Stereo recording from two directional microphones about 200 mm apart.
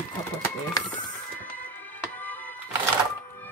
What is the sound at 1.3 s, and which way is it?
Music, 10° left (ahead or behind).